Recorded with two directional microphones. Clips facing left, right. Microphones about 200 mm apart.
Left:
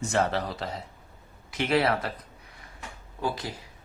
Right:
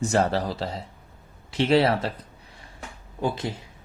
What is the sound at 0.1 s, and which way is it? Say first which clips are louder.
Speech: right 1 dB; 35° right (ahead or behind).